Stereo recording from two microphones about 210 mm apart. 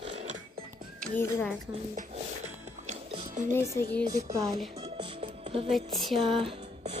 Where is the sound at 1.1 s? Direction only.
10° left (ahead or behind).